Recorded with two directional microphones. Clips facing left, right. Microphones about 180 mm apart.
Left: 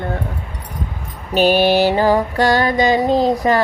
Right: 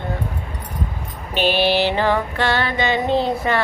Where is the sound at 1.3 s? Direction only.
45° left (ahead or behind).